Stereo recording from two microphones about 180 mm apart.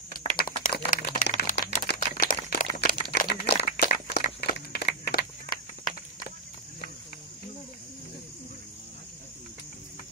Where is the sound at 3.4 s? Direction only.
65° left (ahead or behind).